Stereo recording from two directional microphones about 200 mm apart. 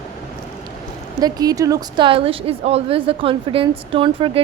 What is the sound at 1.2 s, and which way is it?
A woman's voice, 20° right (ahead or behind).